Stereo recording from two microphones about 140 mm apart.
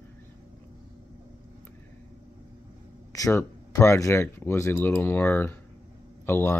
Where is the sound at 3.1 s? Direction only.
25° left (ahead or behind).